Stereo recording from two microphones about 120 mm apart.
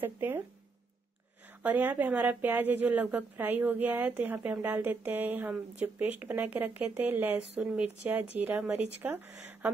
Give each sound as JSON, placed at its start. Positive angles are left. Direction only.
{"t": 0.0, "sound": "a woman's voice", "side_deg": -15}
{"t": 1.6, "sound": "a woman's voice", "side_deg": -15}